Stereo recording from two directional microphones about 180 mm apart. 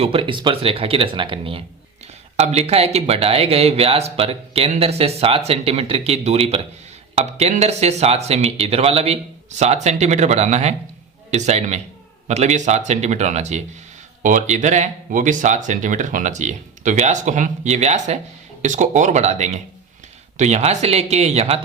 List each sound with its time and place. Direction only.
0.0 s speech: 30° right (ahead or behind)